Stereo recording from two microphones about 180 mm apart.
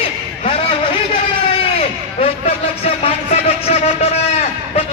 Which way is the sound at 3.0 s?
35° left (ahead or behind).